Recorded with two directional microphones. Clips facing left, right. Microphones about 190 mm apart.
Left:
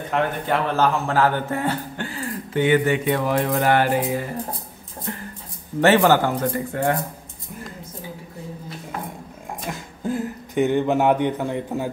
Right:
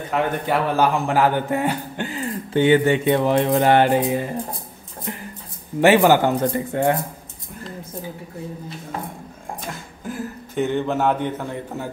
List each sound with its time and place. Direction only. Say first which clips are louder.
0.1 s speech: right 1 dB; 5° right (ahead or behind)
10.5 s a man's voice: left 3 dB; 15° left (ahead or behind)